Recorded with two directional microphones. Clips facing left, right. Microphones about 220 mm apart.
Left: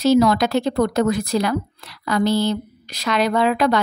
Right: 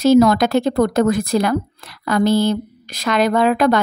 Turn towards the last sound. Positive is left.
turn(degrees=-50)  # may be behind; listen again after turning